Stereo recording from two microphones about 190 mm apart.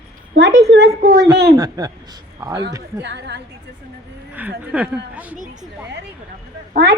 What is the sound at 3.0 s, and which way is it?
Speech, 65° right (ahead or behind).